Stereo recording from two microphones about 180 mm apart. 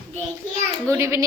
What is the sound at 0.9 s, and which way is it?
Speech, 15° right (ahead or behind).